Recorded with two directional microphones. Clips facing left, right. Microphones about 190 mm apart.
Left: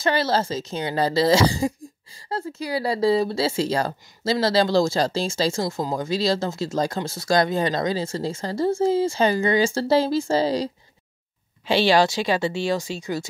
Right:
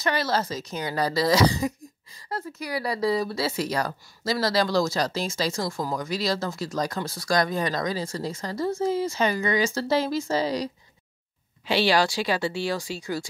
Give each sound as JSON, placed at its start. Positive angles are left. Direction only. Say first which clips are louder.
{"t": 0.0, "sound": "speech", "louder": "left 4 dB", "side_deg": 30}